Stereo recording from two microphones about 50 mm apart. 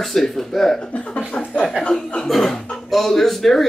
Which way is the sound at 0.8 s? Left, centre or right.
Left.